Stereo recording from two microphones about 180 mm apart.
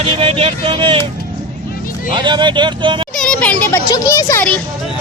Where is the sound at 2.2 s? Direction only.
25° right (ahead or behind).